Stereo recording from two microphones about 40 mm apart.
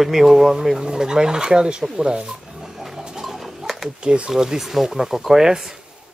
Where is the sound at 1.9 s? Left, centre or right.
Right.